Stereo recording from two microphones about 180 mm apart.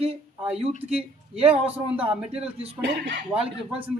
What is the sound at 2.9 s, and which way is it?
Speech, 65° right (ahead or behind).